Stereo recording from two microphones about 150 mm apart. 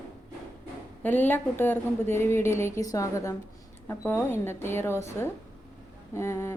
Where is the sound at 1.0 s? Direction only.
10° left (ahead or behind).